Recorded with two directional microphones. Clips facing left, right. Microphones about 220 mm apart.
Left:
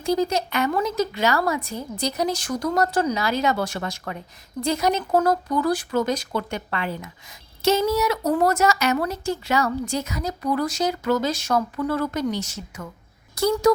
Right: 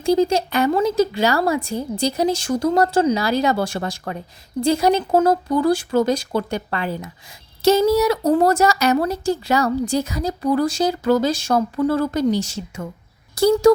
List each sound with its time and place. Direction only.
0.0 s speech: 30° right (ahead or behind)